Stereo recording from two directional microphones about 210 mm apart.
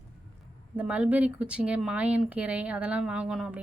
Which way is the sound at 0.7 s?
5° right (ahead or behind).